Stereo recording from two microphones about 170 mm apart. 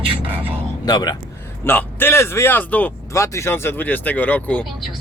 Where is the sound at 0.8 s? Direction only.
25° left (ahead or behind).